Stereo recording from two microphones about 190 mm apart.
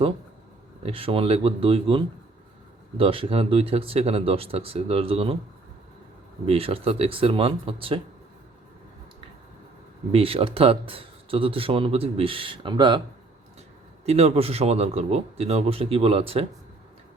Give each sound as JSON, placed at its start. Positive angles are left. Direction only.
{"t": 0.8, "sound": "a man's voice", "side_deg": -30}
{"t": 6.4, "sound": "speech", "side_deg": -30}
{"t": 10.1, "sound": "speech", "side_deg": -30}
{"t": 14.0, "sound": "a man's voice", "side_deg": -35}